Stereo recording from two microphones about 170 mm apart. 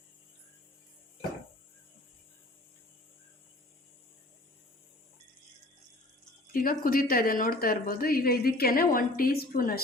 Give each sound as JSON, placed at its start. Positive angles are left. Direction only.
{"t": 6.5, "sound": "speech", "side_deg": 55}